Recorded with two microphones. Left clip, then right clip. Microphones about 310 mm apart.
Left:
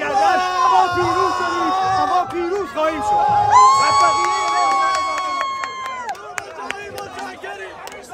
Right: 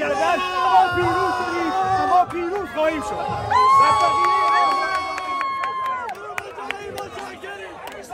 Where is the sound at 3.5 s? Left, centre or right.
Centre.